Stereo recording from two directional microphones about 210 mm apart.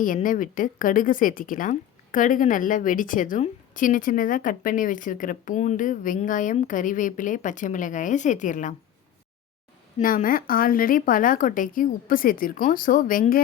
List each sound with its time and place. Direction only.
0.0 s speech: 40° left (ahead or behind)
10.0 s speech: 40° left (ahead or behind)